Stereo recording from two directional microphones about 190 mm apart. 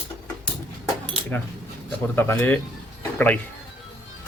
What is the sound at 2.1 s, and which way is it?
Speech, 15° left (ahead or behind).